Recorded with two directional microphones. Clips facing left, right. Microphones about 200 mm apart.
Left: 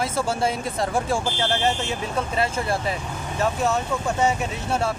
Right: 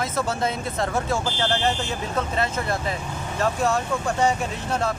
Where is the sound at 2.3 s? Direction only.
10° left (ahead or behind).